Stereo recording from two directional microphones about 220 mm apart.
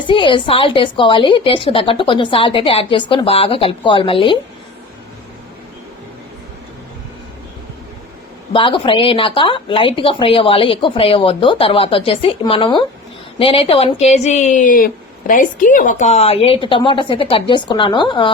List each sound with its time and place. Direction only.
0.1 s a woman's voice: 20° left (ahead or behind)
8.5 s a woman's voice: 25° left (ahead or behind)